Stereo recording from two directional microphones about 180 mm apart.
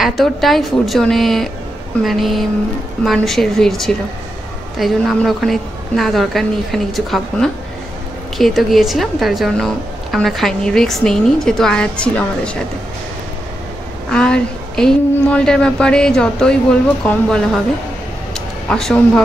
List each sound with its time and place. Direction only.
0.0 s a woman's voice: centre (ahead or behind)
14.1 s a woman's voice: 5° left (ahead or behind)
18.3 s a sound: 5° left (ahead or behind)